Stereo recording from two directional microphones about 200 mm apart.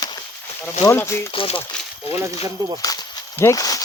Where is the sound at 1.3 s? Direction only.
25° left (ahead or behind).